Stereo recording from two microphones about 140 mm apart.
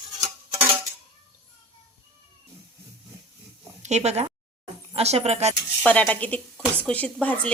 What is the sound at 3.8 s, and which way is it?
Speech, 55° right (ahead or behind).